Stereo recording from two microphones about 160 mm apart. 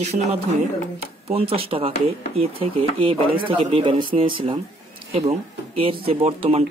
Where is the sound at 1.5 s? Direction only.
40° right (ahead or behind).